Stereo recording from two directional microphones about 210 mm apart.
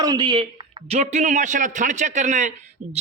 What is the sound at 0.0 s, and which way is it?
Speech, 15° right (ahead or behind).